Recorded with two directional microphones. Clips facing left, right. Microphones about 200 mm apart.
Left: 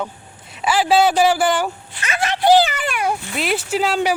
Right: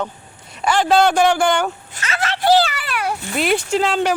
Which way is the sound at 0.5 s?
5° left (ahead or behind).